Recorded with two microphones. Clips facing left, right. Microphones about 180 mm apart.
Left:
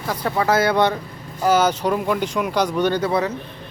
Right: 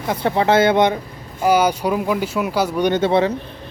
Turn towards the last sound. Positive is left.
turn(degrees=-25)  # may be behind; listen again after turning